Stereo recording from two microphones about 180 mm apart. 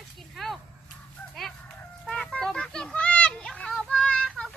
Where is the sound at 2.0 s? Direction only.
5° left (ahead or behind).